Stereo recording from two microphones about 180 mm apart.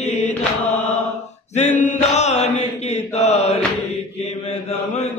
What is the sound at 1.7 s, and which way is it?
Mantra, 40° left (ahead or behind).